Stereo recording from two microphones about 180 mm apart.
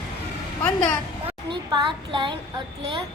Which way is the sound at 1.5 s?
25° right (ahead or behind).